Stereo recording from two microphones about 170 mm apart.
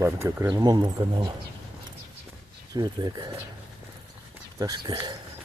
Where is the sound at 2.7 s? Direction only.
25° right (ahead or behind).